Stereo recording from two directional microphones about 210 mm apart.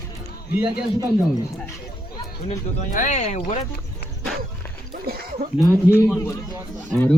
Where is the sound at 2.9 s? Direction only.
35° left (ahead or behind).